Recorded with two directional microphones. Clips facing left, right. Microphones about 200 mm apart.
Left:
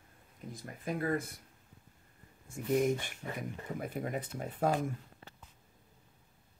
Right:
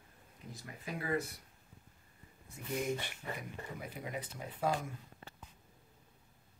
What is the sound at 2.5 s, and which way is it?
Speech, 50° left (ahead or behind).